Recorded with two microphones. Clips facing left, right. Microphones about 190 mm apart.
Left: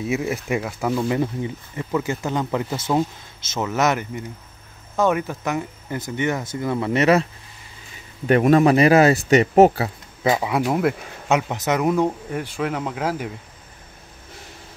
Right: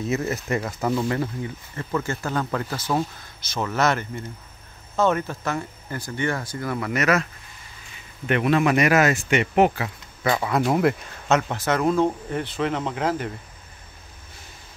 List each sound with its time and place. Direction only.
0.0 s speech: 10° left (ahead or behind)
1.0 s speech: 20° left (ahead or behind)
8.3 s speech: 40° left (ahead or behind)
10.2 s speech: 20° left (ahead or behind)
10.5 s speech: 5° left (ahead or behind)
11.2 s speech: 15° left (ahead or behind)